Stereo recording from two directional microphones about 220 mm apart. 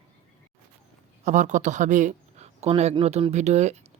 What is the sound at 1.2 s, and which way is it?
Speech, 35° right (ahead or behind).